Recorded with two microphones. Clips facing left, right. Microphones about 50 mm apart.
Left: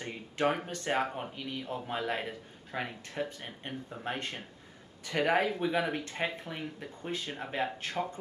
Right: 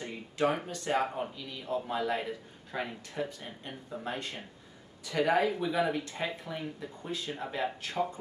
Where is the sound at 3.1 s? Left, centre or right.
Left.